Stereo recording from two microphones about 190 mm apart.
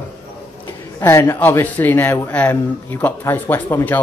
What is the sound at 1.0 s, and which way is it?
Speech, 15° left (ahead or behind).